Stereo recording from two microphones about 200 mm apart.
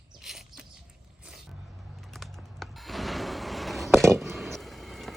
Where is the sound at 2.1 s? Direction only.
Centre (ahead or behind).